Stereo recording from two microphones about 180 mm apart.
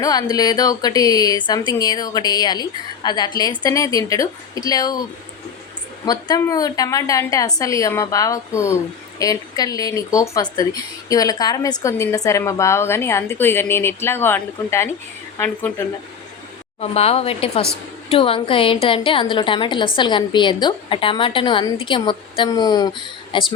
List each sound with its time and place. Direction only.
0.0 s speech: 20° left (ahead or behind)
6.1 s a woman's voice: 20° left (ahead or behind)
16.8 s speech: 35° left (ahead or behind)